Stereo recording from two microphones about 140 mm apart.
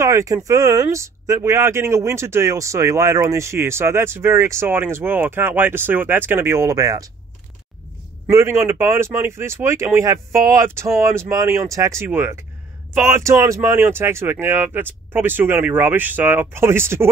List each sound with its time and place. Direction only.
0.0 s speech: 25° right (ahead or behind)
8.3 s speech: 20° right (ahead or behind)